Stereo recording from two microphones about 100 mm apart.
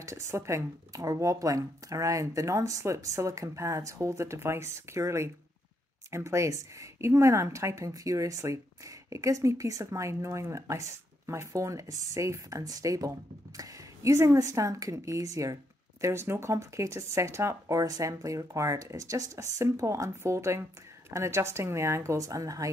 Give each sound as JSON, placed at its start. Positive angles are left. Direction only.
{"t": 0.0, "sound": "a woman's voice", "side_deg": -30}